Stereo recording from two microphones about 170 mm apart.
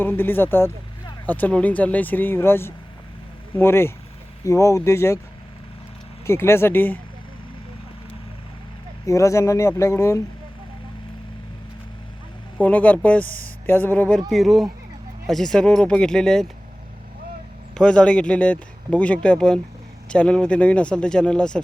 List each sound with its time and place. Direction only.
0.0 s speech: 10° left (ahead or behind)
6.2 s speech: 15° left (ahead or behind)
9.0 s speech: 20° left (ahead or behind)
12.6 s speech: 10° left (ahead or behind)
14.3 s speech: centre (ahead or behind)
17.7 s speech: 5° left (ahead or behind)